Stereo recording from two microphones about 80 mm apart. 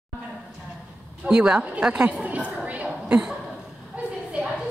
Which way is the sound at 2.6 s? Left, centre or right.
Centre.